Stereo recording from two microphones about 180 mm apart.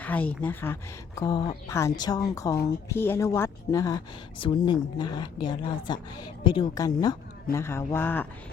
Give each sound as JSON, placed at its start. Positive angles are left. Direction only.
{"t": 0.0, "sound": "a woman's voice", "side_deg": 10}